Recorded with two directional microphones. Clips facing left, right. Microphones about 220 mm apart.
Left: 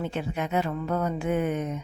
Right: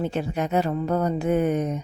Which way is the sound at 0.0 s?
40° right (ahead or behind).